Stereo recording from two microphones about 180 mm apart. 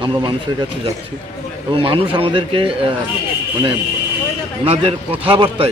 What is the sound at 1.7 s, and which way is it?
A man's voice, 30° right (ahead or behind).